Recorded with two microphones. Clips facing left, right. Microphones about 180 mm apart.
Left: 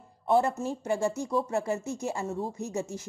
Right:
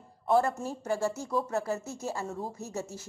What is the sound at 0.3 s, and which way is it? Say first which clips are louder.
Speech: left 1 dB; 25° left (ahead or behind).